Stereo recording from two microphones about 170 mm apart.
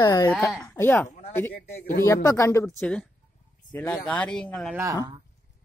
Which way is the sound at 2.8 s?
5° left (ahead or behind).